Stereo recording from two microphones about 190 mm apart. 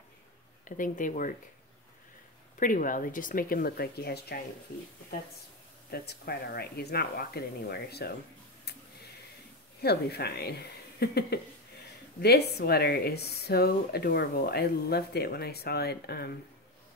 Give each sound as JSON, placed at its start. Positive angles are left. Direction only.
{"t": 0.7, "sound": "speech", "side_deg": 45}
{"t": 2.6, "sound": "speech", "side_deg": 45}
{"t": 5.9, "sound": "speech", "side_deg": 55}
{"t": 9.8, "sound": "speech", "side_deg": 60}